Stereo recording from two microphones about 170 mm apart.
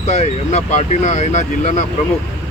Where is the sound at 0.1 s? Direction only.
40° left (ahead or behind).